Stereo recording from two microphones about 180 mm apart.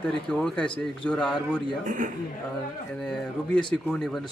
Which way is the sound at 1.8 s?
45° right (ahead or behind).